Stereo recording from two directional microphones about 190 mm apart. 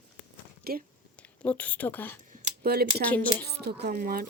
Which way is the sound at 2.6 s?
55° right (ahead or behind).